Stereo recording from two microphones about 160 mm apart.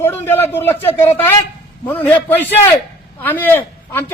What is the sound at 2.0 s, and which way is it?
A man's voice, 10° left (ahead or behind).